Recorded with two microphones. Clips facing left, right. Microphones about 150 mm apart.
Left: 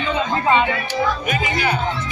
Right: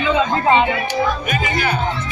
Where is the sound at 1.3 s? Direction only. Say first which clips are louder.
Right 1 dB; 20° left (ahead or behind).